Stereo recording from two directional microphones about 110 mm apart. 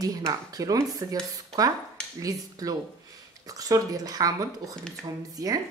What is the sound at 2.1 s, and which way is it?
Speech, 30° right (ahead or behind).